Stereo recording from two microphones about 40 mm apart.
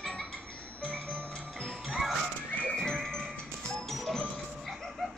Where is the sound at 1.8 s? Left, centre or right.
Centre.